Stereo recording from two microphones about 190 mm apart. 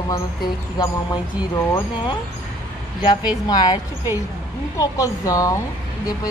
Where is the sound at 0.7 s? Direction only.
20° left (ahead or behind).